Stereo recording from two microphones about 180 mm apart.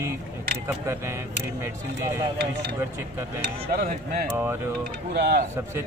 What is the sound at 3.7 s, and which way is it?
Speech, 55° right (ahead or behind).